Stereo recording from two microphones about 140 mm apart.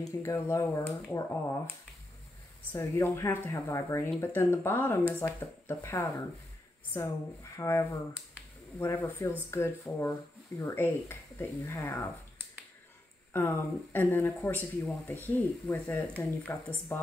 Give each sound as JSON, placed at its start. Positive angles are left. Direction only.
{"t": 0.0, "sound": "speech", "side_deg": 20}
{"t": 2.7, "sound": "speech", "side_deg": 20}
{"t": 13.3, "sound": "speech", "side_deg": 15}